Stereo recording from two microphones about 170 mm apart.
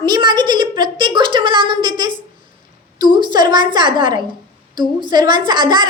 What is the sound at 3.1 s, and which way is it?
A woman's voice, 25° right (ahead or behind).